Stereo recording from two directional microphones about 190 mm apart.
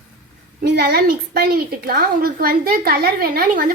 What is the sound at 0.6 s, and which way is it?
A woman's voice, 55° right (ahead or behind).